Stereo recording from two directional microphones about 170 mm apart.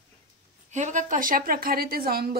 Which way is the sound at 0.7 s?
45° right (ahead or behind).